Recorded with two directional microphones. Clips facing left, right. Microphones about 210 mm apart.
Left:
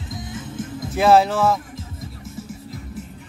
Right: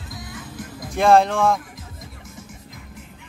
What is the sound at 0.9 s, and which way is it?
Speech, 5° left (ahead or behind).